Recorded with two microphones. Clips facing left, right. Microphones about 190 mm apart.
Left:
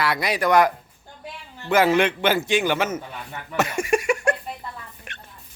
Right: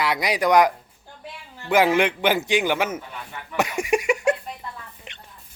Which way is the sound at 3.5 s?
15° right (ahead or behind).